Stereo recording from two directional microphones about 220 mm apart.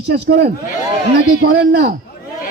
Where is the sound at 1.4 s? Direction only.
50° right (ahead or behind).